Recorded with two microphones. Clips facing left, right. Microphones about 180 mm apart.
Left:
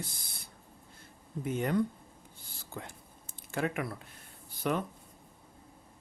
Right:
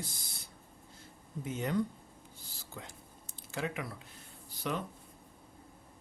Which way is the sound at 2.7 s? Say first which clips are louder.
Left 4 dB; 55° left (ahead or behind).